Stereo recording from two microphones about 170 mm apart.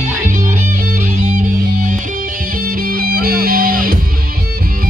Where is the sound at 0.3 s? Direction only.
50° right (ahead or behind).